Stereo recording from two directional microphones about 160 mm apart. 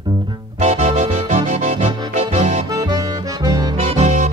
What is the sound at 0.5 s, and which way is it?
Music, 45° right (ahead or behind).